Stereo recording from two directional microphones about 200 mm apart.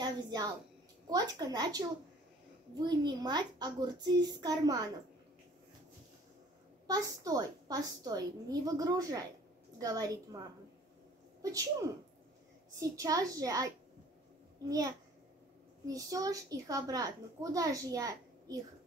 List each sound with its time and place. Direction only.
0.0 s a sound: 20° right (ahead or behind)
1.1 s a woman's voice: 20° right (ahead or behind)
6.9 s a woman's voice: 20° right (ahead or behind)
12.7 s a child's voice: 15° right (ahead or behind)
14.7 s a child's voice: 15° right (ahead or behind)